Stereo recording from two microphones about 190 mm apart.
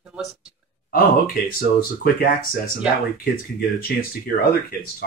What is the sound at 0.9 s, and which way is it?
Speech, 50° left (ahead or behind).